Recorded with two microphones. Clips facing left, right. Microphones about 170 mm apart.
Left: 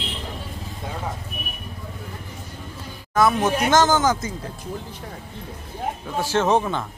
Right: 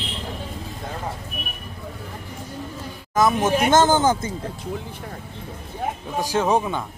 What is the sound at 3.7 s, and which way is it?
Speech, 25° right (ahead or behind).